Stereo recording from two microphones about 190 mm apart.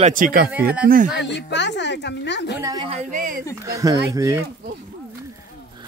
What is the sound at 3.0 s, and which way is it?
Speech, 45° right (ahead or behind).